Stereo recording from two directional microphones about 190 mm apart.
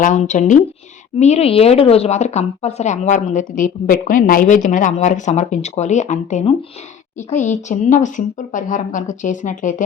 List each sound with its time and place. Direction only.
0.0 s speech: 40° left (ahead or behind)